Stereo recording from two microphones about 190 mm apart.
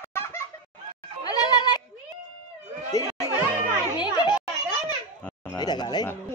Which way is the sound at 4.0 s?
25° left (ahead or behind).